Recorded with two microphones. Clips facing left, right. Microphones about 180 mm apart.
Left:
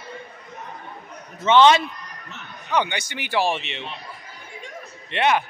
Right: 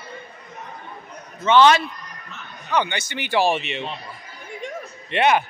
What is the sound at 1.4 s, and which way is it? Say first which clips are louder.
A man's voice: even; 20° left (ahead or behind).